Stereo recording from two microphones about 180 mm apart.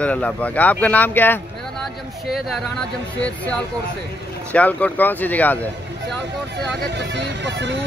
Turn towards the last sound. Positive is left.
turn(degrees=-75)  # may be behind; listen again after turning